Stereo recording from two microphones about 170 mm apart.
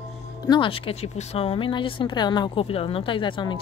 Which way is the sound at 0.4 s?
25° left (ahead or behind).